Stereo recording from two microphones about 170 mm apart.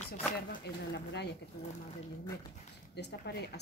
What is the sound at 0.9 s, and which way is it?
Speech, 80° left.